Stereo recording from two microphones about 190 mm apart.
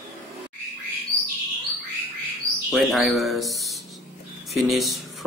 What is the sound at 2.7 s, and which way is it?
Speech, centre (ahead or behind).